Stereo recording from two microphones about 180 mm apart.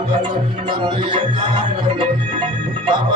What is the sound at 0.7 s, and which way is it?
Music, 25° right (ahead or behind).